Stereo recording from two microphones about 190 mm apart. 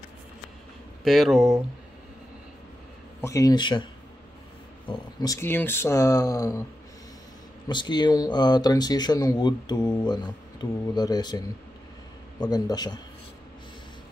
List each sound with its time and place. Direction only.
1.0 s speech: centre (ahead or behind)
3.2 s speech: 15° left (ahead or behind)
4.8 s speech: 20° left (ahead or behind)
7.6 s speech: 25° left (ahead or behind)